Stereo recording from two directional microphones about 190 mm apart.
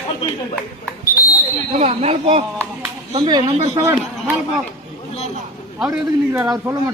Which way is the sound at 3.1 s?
25° right (ahead or behind).